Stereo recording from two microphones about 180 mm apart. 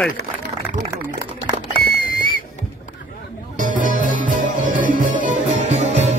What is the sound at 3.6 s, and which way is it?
Music, 45° right (ahead or behind).